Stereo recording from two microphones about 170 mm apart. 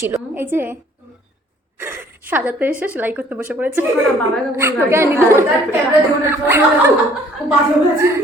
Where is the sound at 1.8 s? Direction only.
10° right (ahead or behind).